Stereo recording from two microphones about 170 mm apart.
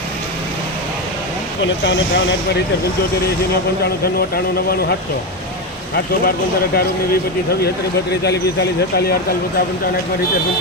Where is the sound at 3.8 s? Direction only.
65° left (ahead or behind).